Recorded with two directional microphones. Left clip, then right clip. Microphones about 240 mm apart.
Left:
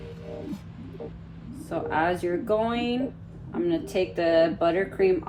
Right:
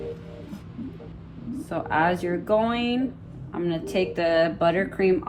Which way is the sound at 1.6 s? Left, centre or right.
Right.